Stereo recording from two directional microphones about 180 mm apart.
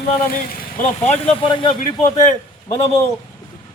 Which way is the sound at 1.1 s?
30° left (ahead or behind).